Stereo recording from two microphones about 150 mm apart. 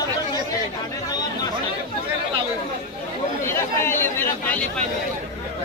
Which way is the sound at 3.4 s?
15° left (ahead or behind).